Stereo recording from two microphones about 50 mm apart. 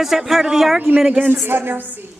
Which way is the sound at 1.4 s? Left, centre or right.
Right.